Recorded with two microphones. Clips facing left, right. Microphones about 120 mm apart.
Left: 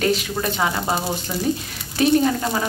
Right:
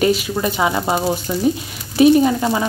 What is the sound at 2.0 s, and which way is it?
Speech, 10° right (ahead or behind).